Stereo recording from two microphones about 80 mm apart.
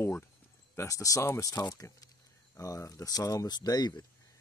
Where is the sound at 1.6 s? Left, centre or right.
Left.